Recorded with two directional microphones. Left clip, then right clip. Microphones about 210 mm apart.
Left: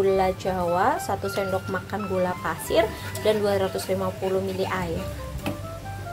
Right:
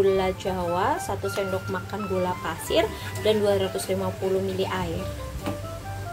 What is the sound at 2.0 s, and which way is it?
Speech, centre (ahead or behind).